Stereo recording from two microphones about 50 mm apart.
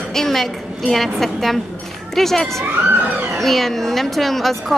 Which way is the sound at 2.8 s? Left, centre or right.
Right.